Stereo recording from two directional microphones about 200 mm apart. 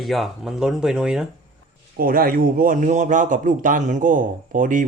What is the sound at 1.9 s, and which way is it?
A man's voice, 45° right (ahead or behind).